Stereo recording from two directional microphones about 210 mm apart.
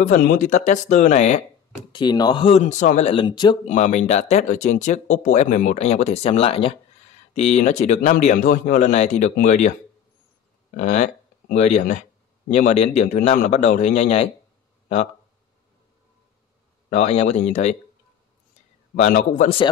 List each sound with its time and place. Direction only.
0.0 s speech: 40° left (ahead or behind)
1.9 s speech: 20° left (ahead or behind)
3.6 s speech: 35° left (ahead or behind)
10.8 s speech: 40° left (ahead or behind)
16.9 s speech: 30° left (ahead or behind)
19.0 s speech: 40° left (ahead or behind)